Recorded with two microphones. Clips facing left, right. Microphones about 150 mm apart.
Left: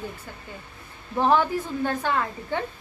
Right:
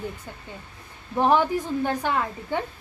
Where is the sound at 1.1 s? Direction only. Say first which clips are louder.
Right 1 dB; 15° right (ahead or behind).